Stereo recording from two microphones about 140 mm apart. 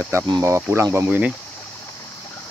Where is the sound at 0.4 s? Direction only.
20° right (ahead or behind).